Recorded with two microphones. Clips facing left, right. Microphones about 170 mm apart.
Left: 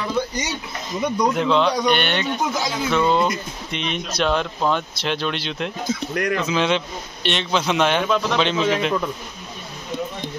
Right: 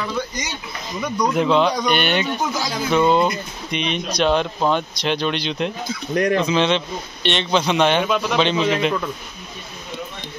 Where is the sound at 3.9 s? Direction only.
5° left (ahead or behind).